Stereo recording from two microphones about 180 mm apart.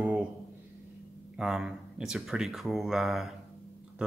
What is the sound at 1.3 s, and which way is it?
A man's voice, 5° right (ahead or behind).